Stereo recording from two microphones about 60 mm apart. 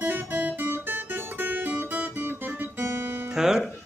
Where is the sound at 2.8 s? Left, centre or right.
Right.